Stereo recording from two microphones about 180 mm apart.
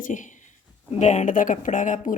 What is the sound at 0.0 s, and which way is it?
A woman's voice, 45° left (ahead or behind).